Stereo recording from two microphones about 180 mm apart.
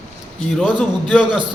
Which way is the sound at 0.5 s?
Centre (ahead or behind).